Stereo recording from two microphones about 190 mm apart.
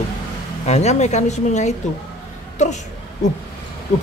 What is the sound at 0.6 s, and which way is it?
Speech, 35° left (ahead or behind).